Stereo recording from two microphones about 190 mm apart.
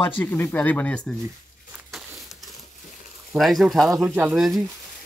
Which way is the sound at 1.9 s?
Centre (ahead or behind).